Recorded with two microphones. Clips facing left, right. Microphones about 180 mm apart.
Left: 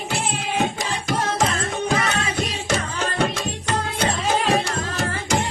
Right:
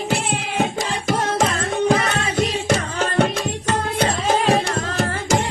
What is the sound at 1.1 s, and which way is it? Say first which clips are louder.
Music: right 2 dB; 50° right (ahead or behind).